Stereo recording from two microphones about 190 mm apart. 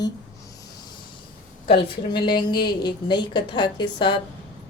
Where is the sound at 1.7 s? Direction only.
25° left (ahead or behind).